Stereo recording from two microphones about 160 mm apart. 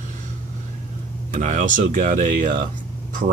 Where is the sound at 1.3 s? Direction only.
55° right (ahead or behind).